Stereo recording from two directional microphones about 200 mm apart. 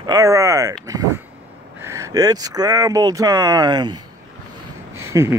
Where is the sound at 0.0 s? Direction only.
15° right (ahead or behind).